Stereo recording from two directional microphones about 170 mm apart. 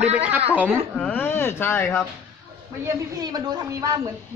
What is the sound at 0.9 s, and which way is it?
A man's voice, 5° left (ahead or behind).